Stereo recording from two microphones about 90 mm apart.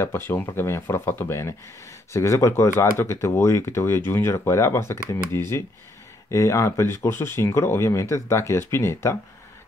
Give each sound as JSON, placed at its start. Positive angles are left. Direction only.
{"t": 0.0, "sound": "speech", "side_deg": 25}